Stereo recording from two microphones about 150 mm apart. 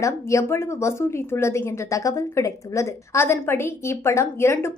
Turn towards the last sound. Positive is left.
turn(degrees=15)  # may be behind; listen again after turning